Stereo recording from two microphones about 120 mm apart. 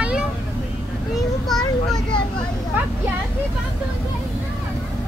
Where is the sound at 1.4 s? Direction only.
5° left (ahead or behind).